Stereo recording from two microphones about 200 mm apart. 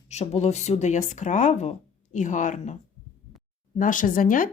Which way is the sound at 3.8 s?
40° left (ahead or behind).